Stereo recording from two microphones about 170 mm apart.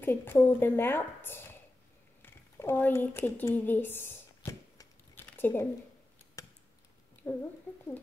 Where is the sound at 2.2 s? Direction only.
15° left (ahead or behind).